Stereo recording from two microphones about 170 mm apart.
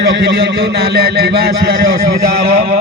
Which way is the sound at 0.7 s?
70° right (ahead or behind).